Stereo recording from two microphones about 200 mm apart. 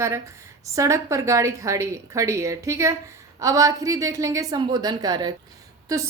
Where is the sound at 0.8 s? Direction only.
15° right (ahead or behind).